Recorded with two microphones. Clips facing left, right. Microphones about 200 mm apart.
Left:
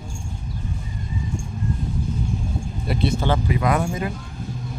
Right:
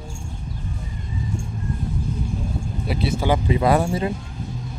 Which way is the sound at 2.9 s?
5° right (ahead or behind).